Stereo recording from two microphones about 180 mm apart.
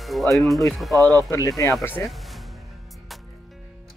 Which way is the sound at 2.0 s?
Centre (ahead or behind).